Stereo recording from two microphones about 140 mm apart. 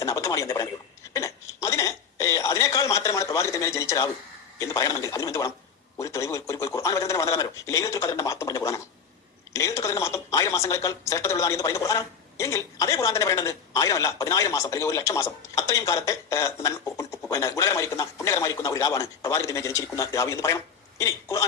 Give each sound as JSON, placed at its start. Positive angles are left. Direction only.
{"t": 0.0, "sound": "speech", "side_deg": 25}
{"t": 1.6, "sound": "a sound", "side_deg": 20}
{"t": 4.6, "sound": "speech", "side_deg": 25}